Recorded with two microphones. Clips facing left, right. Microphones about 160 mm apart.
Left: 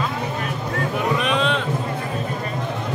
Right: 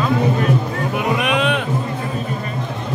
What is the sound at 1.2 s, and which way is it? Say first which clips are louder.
Music: right 2 dB; 65° right (ahead or behind).